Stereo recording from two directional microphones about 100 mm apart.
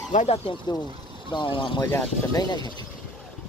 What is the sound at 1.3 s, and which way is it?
Speech, 55° left (ahead or behind).